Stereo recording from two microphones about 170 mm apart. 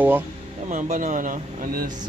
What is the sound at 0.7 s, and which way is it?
Speech, 50° right (ahead or behind).